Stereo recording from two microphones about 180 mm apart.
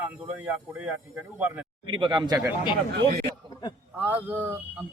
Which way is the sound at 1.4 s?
10° right (ahead or behind).